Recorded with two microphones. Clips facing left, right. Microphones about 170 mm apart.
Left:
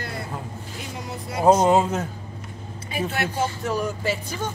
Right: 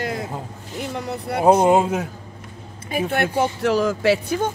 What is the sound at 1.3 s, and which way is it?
Speech, 60° right (ahead or behind).